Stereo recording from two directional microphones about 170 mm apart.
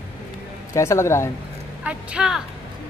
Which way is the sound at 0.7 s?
15° left (ahead or behind).